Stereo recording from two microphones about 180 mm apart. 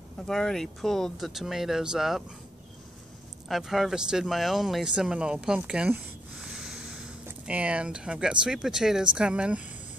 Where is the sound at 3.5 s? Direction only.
Centre (ahead or behind).